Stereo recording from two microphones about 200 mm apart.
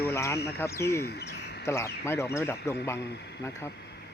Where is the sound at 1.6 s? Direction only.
15° left (ahead or behind).